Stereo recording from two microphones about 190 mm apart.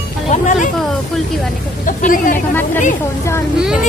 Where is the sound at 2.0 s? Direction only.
45° left (ahead or behind).